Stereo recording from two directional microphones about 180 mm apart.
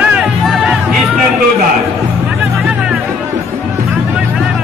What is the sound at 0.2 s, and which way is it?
Music, centre (ahead or behind).